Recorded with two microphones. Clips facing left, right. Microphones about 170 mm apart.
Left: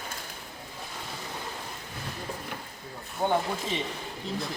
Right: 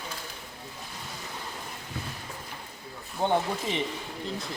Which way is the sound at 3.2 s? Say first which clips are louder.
Right 1 dB; 20° right (ahead or behind).